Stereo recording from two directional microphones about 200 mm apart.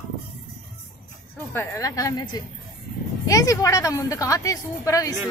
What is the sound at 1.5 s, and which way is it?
A woman's voice, 10° left (ahead or behind).